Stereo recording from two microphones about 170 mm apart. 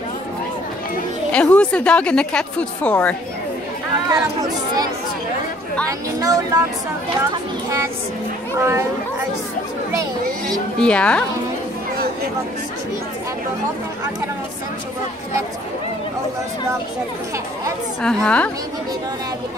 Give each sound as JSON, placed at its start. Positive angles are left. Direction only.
{"t": 1.3, "sound": "speech", "side_deg": 5}
{"t": 4.1, "sound": "speech", "side_deg": -25}
{"t": 5.9, "sound": "speech", "side_deg": -20}
{"t": 8.5, "sound": "speech", "side_deg": -15}
{"t": 10.8, "sound": "speech", "side_deg": 5}
{"t": 18.0, "sound": "a woman's voice", "side_deg": 5}